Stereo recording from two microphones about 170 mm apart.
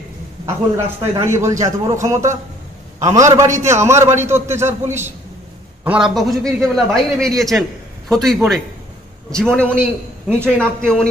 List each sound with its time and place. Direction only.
0.5 s a man's voice: 15° right (ahead or behind); by 9.8 s 5° left (ahead or behind)
9.8 s a man's voice: 10° right (ahead or behind)